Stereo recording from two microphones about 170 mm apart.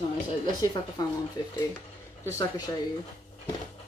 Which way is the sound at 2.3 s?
20° left (ahead or behind).